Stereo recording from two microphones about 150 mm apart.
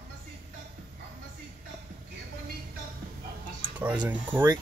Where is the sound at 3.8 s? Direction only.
10° right (ahead or behind).